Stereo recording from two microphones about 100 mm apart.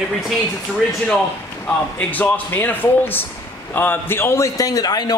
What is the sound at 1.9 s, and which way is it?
A man's voice, 15° left (ahead or behind).